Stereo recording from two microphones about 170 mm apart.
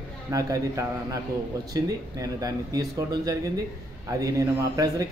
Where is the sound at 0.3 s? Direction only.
20° right (ahead or behind).